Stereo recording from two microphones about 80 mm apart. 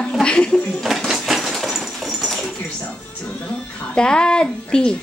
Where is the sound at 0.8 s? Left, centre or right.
Centre.